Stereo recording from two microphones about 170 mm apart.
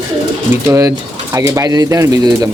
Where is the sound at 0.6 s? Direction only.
15° right (ahead or behind).